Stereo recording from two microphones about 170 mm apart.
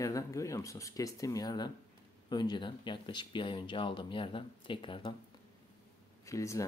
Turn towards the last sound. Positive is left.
turn(degrees=20)  # may be behind; listen again after turning